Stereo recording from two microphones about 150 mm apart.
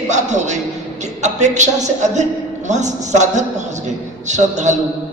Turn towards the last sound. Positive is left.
turn(degrees=-50)  # may be behind; listen again after turning